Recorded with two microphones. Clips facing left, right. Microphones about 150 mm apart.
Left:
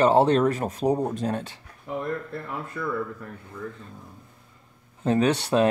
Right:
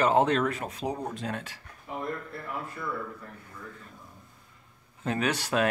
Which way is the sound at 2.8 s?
65° left (ahead or behind).